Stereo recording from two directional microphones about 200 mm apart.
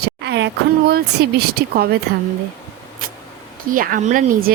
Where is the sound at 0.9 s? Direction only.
50° right (ahead or behind).